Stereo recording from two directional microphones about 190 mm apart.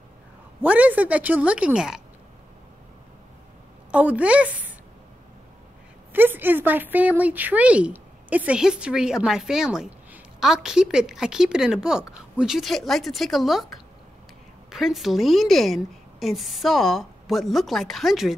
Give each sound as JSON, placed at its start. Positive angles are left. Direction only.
{"t": 0.6, "sound": "a woman's voice", "side_deg": -10}
{"t": 3.9, "sound": "a woman's voice", "side_deg": -5}
{"t": 6.1, "sound": "speech", "side_deg": -10}